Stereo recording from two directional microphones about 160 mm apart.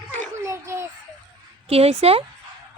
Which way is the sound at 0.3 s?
20° right (ahead or behind).